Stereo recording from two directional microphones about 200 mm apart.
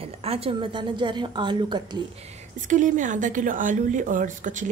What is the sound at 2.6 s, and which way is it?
Speech, 40° right (ahead or behind).